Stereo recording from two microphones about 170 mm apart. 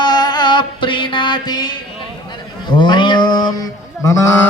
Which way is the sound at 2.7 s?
25° left (ahead or behind).